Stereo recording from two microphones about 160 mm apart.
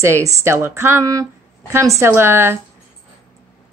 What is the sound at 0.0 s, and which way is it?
Speech, 20° right (ahead or behind).